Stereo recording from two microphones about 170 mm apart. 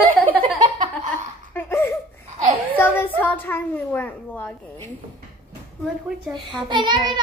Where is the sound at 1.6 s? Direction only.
15° left (ahead or behind).